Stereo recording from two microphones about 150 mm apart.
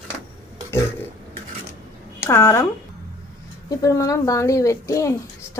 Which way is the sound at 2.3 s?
20° left (ahead or behind).